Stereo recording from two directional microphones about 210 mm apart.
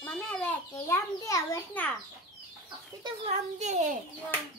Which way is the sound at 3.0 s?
30° right (ahead or behind).